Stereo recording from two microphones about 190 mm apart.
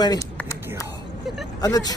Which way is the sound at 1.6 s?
20° left (ahead or behind).